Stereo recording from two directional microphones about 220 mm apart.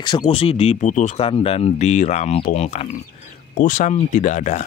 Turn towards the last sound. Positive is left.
turn(degrees=35)  # may be behind; listen again after turning